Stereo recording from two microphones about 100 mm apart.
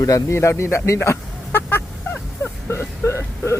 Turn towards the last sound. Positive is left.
turn(degrees=25)  # may be behind; listen again after turning